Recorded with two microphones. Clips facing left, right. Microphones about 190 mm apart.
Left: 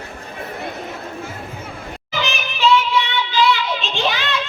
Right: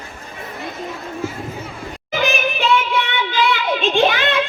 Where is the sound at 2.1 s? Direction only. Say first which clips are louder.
Right 6 dB; 55° right (ahead or behind).